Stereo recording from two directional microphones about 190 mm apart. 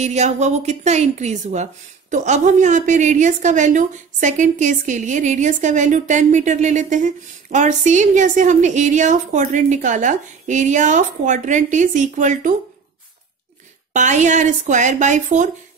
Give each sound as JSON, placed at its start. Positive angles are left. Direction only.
{"t": 0.0, "sound": "a woman's voice", "side_deg": -35}
{"t": 13.9, "sound": "a woman's voice", "side_deg": -40}